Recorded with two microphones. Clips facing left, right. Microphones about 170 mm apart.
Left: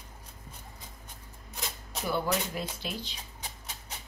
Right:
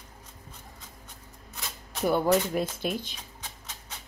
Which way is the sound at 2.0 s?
50° right (ahead or behind).